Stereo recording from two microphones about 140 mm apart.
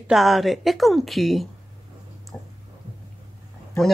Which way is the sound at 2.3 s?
5° left (ahead or behind).